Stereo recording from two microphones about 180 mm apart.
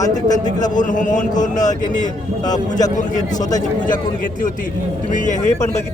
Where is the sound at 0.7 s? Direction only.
45° left (ahead or behind).